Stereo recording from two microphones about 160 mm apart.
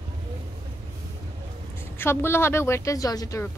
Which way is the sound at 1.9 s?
15° left (ahead or behind).